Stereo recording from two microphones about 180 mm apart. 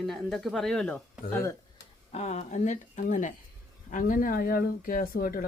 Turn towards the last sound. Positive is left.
turn(degrees=55)  # may be behind; listen again after turning